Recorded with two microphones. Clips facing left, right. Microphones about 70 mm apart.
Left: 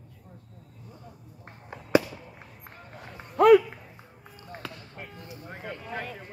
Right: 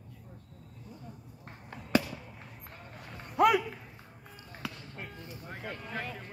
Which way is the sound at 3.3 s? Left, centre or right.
Centre.